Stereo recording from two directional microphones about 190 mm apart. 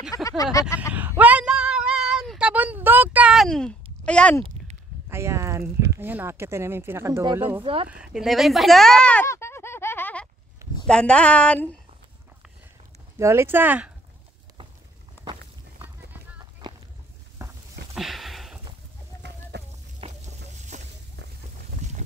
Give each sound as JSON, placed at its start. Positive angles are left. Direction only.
{"t": 0.1, "sound": "vehicle", "side_deg": 15}
{"t": 0.9, "sound": "child singing", "side_deg": -10}
{"t": 5.1, "sound": "a sound", "side_deg": -15}
{"t": 5.9, "sound": "speech", "side_deg": -10}
{"t": 7.6, "sound": "speech", "side_deg": -30}
{"t": 7.9, "sound": "speech", "side_deg": -5}
{"t": 13.2, "sound": "speech", "side_deg": -15}
{"t": 16.1, "sound": "clip-clop", "side_deg": -10}
{"t": 17.4, "sound": "a sound", "side_deg": -15}
{"t": 17.9, "sound": "a sound", "side_deg": 0}
{"t": 19.5, "sound": "a sound", "side_deg": -60}
{"t": 20.0, "sound": "stir", "side_deg": -30}
{"t": 20.5, "sound": "boat", "side_deg": -40}